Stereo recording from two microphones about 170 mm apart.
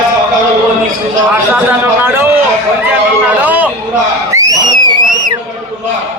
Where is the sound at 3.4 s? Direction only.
10° right (ahead or behind).